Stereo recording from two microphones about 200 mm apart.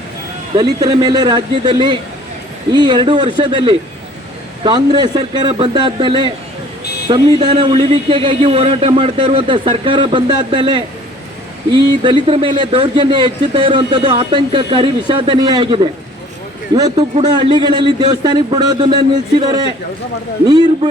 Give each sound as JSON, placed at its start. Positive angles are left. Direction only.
{"t": 0.5, "sound": "speech", "side_deg": -20}
{"t": 16.9, "sound": "speech", "side_deg": -30}
{"t": 20.5, "sound": "speech", "side_deg": -20}